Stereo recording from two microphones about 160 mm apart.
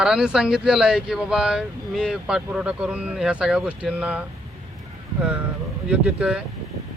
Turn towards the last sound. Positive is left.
turn(degrees=-5)  # may be behind; listen again after turning